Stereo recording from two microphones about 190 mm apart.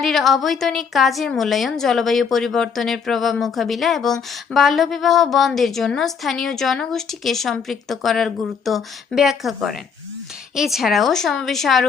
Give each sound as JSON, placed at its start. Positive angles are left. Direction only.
{"t": 0.0, "sound": "a woman's voice", "side_deg": 0}